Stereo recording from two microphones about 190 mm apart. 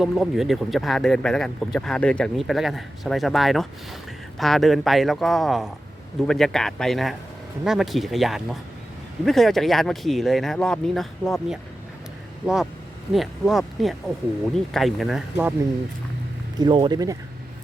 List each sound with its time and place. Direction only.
0.0 s speech: centre (ahead or behind)
13.1 s speech: centre (ahead or behind)
16.6 s speech: 25° right (ahead or behind)